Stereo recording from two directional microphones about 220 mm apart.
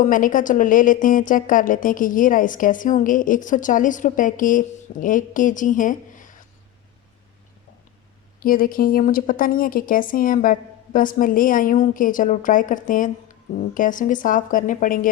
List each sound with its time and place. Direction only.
0.0 s a woman's voice: 35° left (ahead or behind)
8.4 s a woman's voice: 40° left (ahead or behind)